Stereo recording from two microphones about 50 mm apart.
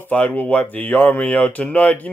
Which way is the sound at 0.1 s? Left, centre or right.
Left.